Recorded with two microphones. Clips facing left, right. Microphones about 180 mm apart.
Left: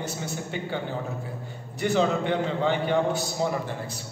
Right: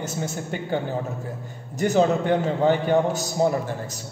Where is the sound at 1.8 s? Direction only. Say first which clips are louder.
Right 4 dB; 45° right (ahead or behind).